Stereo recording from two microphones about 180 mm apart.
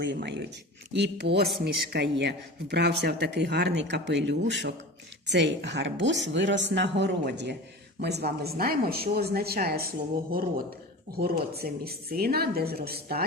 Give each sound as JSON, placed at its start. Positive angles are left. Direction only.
{"t": 0.0, "sound": "a woman's voice", "side_deg": -70}
{"t": 11.2, "sound": "speech", "side_deg": -60}